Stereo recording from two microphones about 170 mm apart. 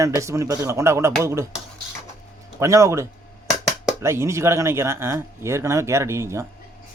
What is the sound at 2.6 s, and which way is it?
A man's voice, 15° right (ahead or behind).